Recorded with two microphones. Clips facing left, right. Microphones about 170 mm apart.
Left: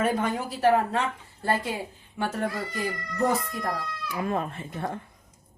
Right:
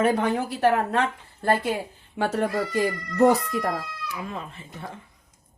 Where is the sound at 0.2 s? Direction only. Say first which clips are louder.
Right 3 dB; 70° right (ahead or behind).